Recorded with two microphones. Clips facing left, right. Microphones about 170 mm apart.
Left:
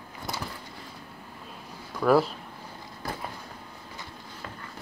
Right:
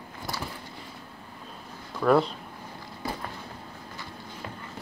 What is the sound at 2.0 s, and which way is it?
Speech, 5° left (ahead or behind).